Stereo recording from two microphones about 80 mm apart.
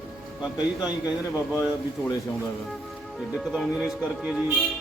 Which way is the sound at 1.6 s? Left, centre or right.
Left.